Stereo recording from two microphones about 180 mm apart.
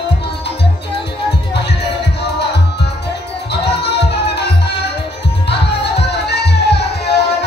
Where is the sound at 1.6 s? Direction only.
70° left (ahead or behind).